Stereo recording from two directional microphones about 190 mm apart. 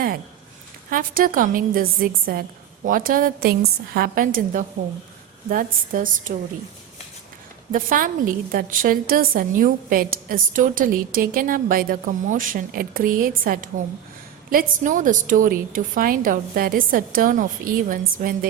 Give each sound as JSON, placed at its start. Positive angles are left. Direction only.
{"t": 0.9, "sound": "a woman's voice", "side_deg": -45}
{"t": 7.7, "sound": "a woman's voice", "side_deg": -45}